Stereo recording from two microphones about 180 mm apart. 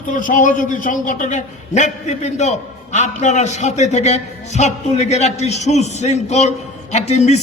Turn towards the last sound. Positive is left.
turn(degrees=40)  # may be behind; listen again after turning